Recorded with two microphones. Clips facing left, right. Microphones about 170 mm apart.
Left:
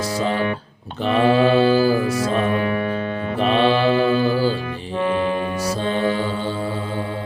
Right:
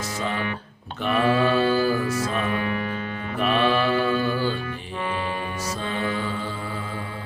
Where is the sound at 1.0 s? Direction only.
30° left (ahead or behind).